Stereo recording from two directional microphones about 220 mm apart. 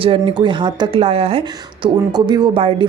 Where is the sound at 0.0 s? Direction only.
20° right (ahead or behind).